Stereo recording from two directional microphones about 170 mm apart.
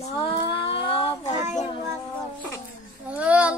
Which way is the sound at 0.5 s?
30° left (ahead or behind).